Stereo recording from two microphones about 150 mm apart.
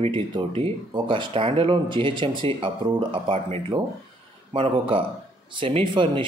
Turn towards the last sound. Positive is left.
turn(degrees=-35)  # may be behind; listen again after turning